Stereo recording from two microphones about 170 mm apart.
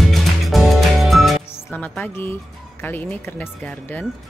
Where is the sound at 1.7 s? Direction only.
10° left (ahead or behind).